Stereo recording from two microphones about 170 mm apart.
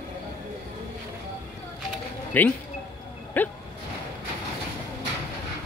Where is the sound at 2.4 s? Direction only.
10° left (ahead or behind).